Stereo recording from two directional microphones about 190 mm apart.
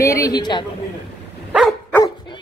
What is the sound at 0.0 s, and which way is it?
Speech, 15° left (ahead or behind).